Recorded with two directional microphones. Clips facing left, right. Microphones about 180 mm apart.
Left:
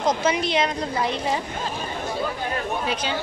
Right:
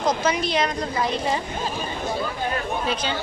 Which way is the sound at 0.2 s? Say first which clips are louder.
Even; 25° left (ahead or behind).